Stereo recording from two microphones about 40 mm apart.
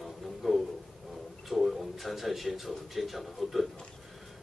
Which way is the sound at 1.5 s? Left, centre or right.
Centre.